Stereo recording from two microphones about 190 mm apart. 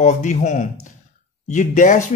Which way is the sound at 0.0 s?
40° left (ahead or behind).